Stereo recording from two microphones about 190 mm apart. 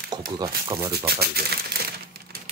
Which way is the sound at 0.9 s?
55° right (ahead or behind).